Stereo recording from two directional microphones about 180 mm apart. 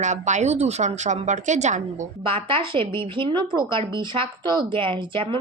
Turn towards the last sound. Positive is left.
turn(degrees=-25)  # may be behind; listen again after turning